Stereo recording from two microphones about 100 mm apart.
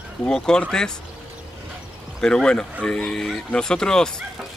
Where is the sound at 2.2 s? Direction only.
10° left (ahead or behind).